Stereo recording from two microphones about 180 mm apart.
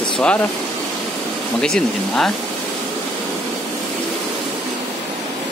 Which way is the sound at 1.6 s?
Centre (ahead or behind).